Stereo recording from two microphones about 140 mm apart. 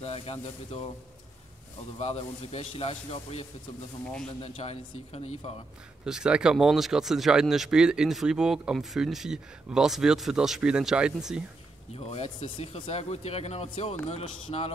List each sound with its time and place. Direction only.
0.0 s speech: 45° left (ahead or behind)
2.0 s speech: 45° left (ahead or behind)
6.0 s speech: 5° right (ahead or behind)
11.9 s speech: 45° left (ahead or behind)